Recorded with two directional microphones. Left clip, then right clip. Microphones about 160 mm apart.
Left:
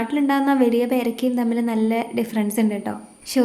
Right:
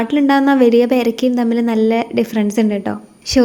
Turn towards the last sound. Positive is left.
turn(degrees=-30)  # may be behind; listen again after turning